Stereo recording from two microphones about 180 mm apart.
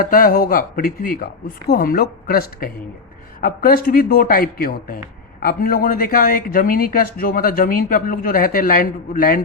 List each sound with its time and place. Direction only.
0.0 s speech: 50° left (ahead or behind)